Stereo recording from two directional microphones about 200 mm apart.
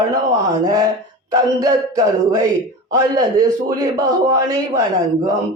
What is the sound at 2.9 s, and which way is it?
A man's voice, 20° right (ahead or behind).